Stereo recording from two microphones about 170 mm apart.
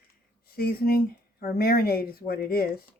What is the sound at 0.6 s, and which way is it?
Speech, 65° left (ahead or behind).